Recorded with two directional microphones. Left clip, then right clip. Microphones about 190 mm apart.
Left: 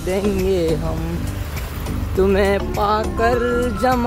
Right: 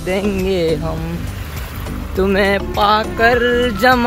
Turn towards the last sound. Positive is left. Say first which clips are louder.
# right 5 dB
turn(degrees=0)  # may be behind; listen again after turning